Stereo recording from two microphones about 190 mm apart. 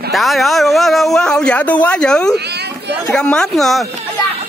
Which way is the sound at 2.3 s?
60° right (ahead or behind).